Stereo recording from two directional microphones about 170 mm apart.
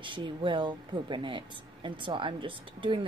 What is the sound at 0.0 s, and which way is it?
Speech, 30° right (ahead or behind).